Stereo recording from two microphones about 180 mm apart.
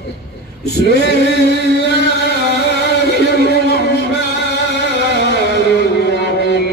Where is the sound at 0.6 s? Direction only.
70° left (ahead or behind).